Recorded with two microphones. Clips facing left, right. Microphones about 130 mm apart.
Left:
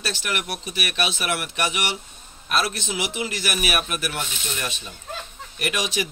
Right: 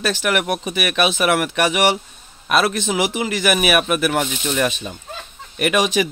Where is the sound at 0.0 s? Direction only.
65° right (ahead or behind).